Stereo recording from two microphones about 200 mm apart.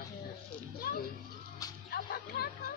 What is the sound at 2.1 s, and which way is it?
Speech, 50° left (ahead or behind).